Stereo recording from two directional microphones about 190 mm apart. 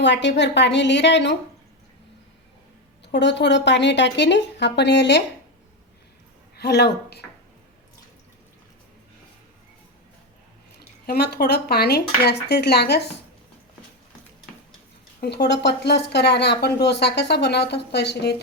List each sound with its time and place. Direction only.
0.0 s speech: 70° left (ahead or behind)
3.1 s speech: 65° left (ahead or behind)
6.6 s a woman's voice: 60° left (ahead or behind)
10.8 s speech: 55° left (ahead or behind)
15.2 s speech: 60° left (ahead or behind)